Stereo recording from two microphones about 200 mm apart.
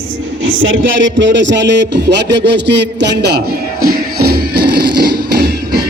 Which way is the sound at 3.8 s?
50° right (ahead or behind).